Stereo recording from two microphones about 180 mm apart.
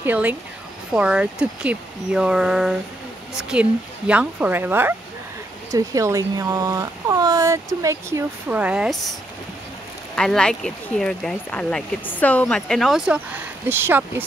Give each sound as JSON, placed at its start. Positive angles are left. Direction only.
{"t": 0.0, "sound": "speech", "side_deg": -10}
{"t": 10.1, "sound": "speech", "side_deg": 5}